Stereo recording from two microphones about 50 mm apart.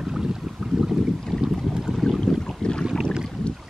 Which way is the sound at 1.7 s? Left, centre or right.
Centre.